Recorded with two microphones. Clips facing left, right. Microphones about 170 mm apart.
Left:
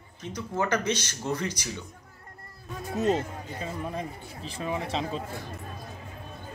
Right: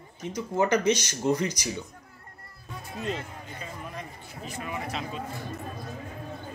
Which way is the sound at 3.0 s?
40° left (ahead or behind).